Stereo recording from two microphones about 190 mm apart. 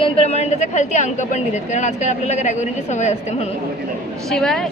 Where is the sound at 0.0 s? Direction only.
35° left (ahead or behind).